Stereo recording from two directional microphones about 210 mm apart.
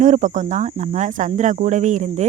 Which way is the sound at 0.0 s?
35° right (ahead or behind).